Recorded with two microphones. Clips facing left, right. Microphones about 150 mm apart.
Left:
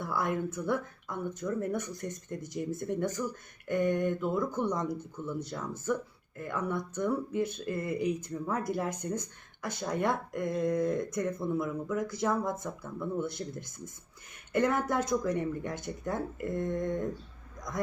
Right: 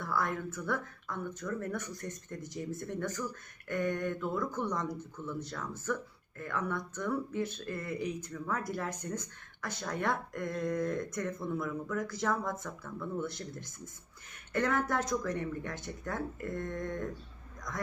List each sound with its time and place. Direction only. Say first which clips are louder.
0.0 s speech: left 3 dB; 15° left (ahead or behind)